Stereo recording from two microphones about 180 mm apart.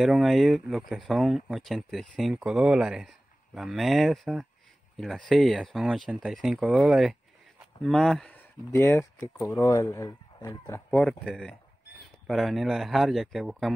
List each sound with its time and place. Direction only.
0.0 s speech: centre (ahead or behind)
8.7 s speech: 15° left (ahead or behind)
10.9 s speech: 5° left (ahead or behind)